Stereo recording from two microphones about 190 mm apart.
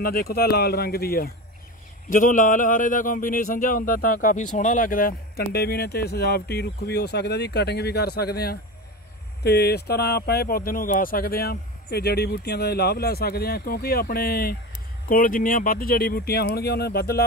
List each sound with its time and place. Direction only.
0.0 s speech: 50° left (ahead or behind)
2.0 s speech: 45° left (ahead or behind)